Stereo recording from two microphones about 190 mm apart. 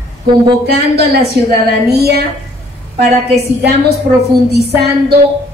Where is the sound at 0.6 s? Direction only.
60° right (ahead or behind).